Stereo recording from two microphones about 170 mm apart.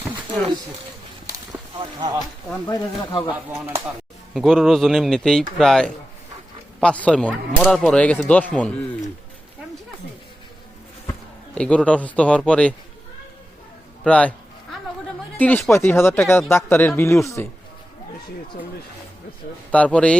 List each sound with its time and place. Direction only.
1.8 s speech: 30° right (ahead or behind)
2.6 s speech: 25° left (ahead or behind)
4.4 s a man's voice: centre (ahead or behind)
11.5 s speech: 5° left (ahead or behind)
14.0 s a sound: 5° left (ahead or behind)
15.4 s speech: 10° left (ahead or behind)
19.7 s speech: 5° left (ahead or behind)